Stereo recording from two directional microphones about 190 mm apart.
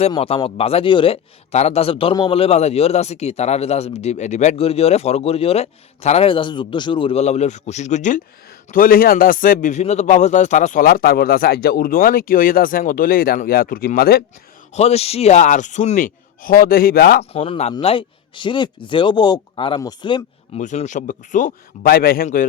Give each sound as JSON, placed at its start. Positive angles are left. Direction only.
{"t": 0.1, "sound": "a man's voice", "side_deg": 25}
{"t": 14.8, "sound": "a man's voice", "side_deg": 35}
{"t": 17.3, "sound": "speech", "side_deg": 30}
{"t": 20.6, "sound": "a man's voice", "side_deg": 40}